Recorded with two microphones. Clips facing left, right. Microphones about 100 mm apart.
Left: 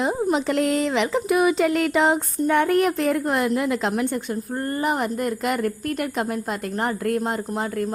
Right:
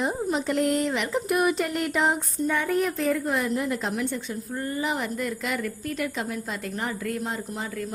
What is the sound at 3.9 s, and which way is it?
A woman's voice, 50° left (ahead or behind).